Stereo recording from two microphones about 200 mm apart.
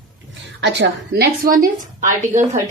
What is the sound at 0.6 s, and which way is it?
A woman's voice, 60° right (ahead or behind).